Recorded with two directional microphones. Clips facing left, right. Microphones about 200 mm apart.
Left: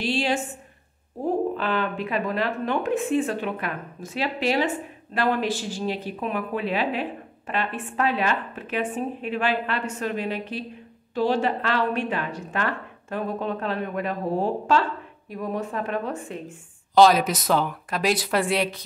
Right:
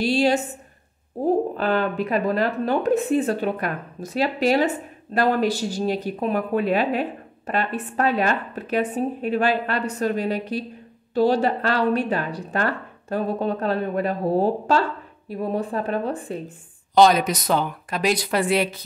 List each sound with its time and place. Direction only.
0.0 s speech: 40° right (ahead or behind)
16.9 s speech: centre (ahead or behind)